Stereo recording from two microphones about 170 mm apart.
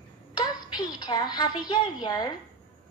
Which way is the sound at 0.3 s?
25° left (ahead or behind).